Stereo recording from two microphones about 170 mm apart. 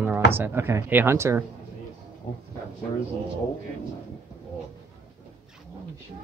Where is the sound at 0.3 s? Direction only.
10° right (ahead or behind).